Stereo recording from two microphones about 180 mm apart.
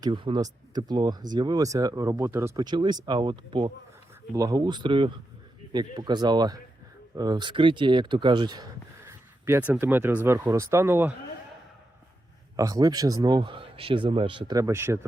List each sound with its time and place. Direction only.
0.0 s speech: 25° right (ahead or behind)
9.0 s speech: 10° right (ahead or behind)
12.5 s speech: 20° right (ahead or behind)